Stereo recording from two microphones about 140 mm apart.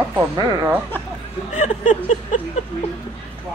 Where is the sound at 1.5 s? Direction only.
60° left (ahead or behind).